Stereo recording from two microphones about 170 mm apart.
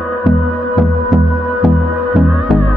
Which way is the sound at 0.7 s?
Centre (ahead or behind).